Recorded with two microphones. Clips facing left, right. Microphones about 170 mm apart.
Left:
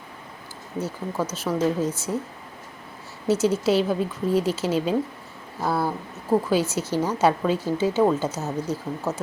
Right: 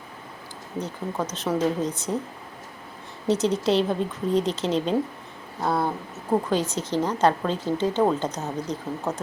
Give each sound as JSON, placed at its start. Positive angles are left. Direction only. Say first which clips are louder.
{"t": 0.8, "sound": "speech", "louder": "left 1 dB", "side_deg": 5}
{"t": 3.2, "sound": "a woman's voice", "louder": "left 1 dB", "side_deg": 5}